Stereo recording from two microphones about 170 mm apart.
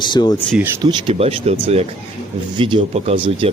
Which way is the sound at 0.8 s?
25° right (ahead or behind).